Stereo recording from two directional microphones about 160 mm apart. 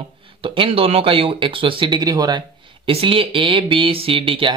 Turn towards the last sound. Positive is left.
turn(degrees=-35)  # may be behind; listen again after turning